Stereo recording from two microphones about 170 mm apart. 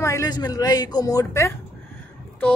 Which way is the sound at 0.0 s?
20° left (ahead or behind).